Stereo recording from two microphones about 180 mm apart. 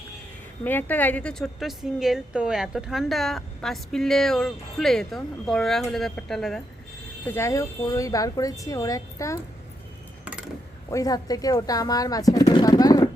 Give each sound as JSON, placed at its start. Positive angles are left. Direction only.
{"t": 0.6, "sound": "a woman's voice", "side_deg": 10}
{"t": 7.3, "sound": "speech", "side_deg": 15}
{"t": 10.9, "sound": "speech", "side_deg": 20}